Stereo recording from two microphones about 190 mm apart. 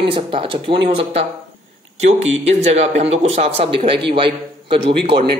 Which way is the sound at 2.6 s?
35° right (ahead or behind).